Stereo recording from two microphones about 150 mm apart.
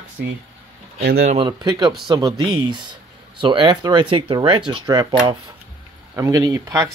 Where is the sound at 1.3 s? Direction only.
30° right (ahead or behind).